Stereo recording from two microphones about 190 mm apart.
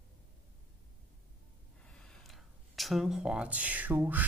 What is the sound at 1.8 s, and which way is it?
Speech, 5° left (ahead or behind).